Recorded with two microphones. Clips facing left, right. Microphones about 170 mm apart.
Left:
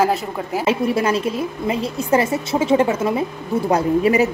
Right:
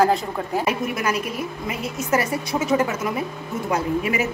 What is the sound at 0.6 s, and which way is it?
A woman's voice, 30° left (ahead or behind).